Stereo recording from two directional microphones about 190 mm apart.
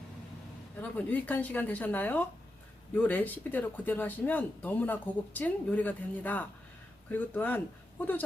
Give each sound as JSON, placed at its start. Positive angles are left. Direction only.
{"t": 0.8, "sound": "speech", "side_deg": 10}